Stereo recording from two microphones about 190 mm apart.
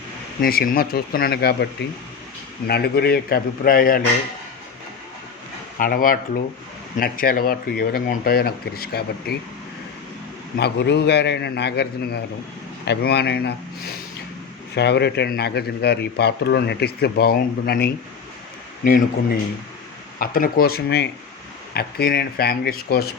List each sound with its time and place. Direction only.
0.4 s speech: 50° left (ahead or behind)
5.8 s speech: 45° left (ahead or behind)
10.6 s speech: 60° left (ahead or behind)
14.8 s speech: 60° left (ahead or behind)
20.1 s speech: 50° left (ahead or behind)